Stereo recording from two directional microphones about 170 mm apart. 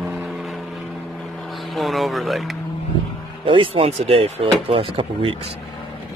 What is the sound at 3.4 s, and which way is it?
Speech, 30° right (ahead or behind).